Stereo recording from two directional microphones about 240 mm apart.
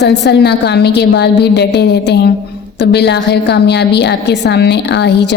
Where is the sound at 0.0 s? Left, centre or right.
Left.